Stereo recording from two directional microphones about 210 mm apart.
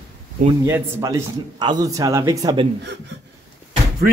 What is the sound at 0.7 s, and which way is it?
A man's voice, 15° right (ahead or behind).